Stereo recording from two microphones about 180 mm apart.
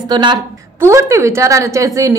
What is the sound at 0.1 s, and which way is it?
A woman's voice, 25° right (ahead or behind).